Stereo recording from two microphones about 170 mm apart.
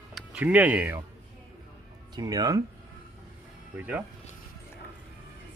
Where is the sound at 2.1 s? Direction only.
20° right (ahead or behind).